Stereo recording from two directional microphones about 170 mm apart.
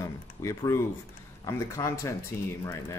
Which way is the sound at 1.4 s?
20° left (ahead or behind).